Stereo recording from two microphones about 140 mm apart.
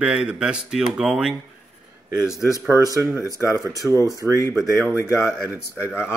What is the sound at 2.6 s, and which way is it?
Speech, 25° right (ahead or behind).